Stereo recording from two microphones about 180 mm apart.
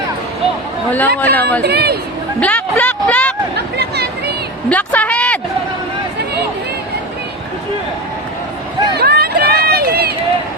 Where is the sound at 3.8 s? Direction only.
65° right (ahead or behind).